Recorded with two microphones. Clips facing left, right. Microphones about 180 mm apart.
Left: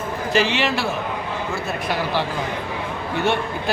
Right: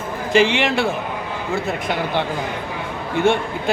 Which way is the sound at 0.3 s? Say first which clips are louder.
Right 4 dB; 15° right (ahead or behind).